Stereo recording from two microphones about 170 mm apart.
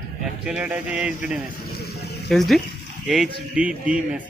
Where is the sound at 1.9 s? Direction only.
70° left (ahead or behind).